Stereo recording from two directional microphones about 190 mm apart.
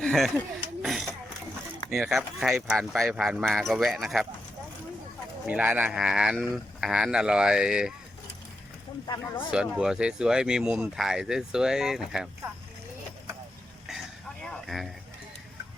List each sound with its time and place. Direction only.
0.0 s speech: centre (ahead or behind)
5.5 s speech: 10° right (ahead or behind)
9.0 s speech: 20° left (ahead or behind)
9.5 s speech: 5° right (ahead or behind)
14.4 s a sound: centre (ahead or behind)